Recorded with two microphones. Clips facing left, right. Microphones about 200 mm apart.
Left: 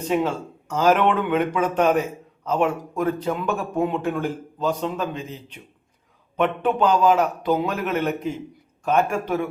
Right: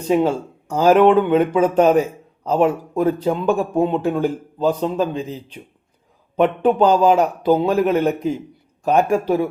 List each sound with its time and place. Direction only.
0.1 s speech: 35° right (ahead or behind)